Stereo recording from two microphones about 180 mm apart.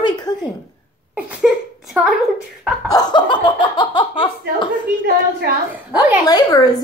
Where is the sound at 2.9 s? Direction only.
25° left (ahead or behind).